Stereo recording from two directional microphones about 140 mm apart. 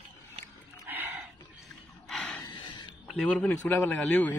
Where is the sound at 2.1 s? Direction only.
5° left (ahead or behind).